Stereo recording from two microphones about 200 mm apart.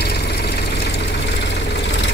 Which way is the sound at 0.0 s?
55° left (ahead or behind).